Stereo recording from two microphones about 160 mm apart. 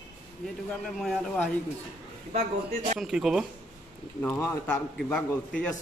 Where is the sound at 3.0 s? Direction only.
5° right (ahead or behind).